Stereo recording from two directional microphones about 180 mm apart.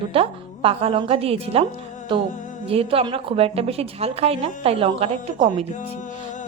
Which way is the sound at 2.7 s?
30° right (ahead or behind).